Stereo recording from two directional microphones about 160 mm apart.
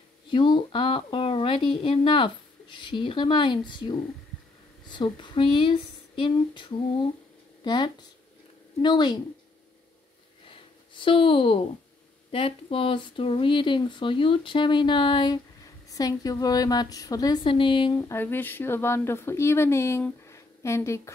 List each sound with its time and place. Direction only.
0.3 s a woman's voice: 30° left (ahead or behind)
10.5 s a sound: 35° left (ahead or behind)
12.3 s a woman's voice: 35° left (ahead or behind)
17.9 s speech: 15° left (ahead or behind)